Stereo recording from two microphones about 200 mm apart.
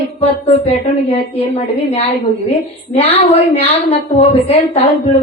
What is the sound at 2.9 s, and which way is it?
A woman's voice, 30° left (ahead or behind).